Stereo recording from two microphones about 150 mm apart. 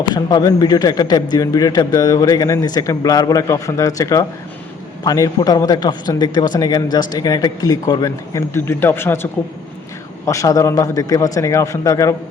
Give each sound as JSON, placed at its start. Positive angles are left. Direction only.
{"t": 0.1, "sound": "a man's voice", "side_deg": 30}